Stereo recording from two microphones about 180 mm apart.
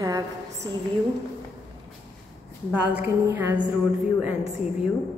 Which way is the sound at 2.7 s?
10° right (ahead or behind).